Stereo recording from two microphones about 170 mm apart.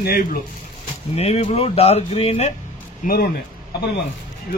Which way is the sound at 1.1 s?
35° left (ahead or behind).